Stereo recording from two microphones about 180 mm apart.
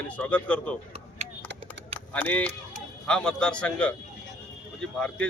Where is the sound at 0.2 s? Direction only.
10° left (ahead or behind).